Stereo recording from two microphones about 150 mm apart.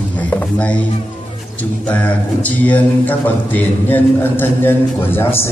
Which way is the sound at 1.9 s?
10° left (ahead or behind).